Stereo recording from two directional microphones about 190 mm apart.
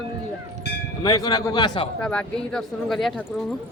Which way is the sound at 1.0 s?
20° left (ahead or behind).